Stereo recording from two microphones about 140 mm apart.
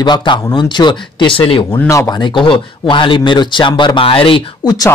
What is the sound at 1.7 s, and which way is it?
Speech, 20° left (ahead or behind).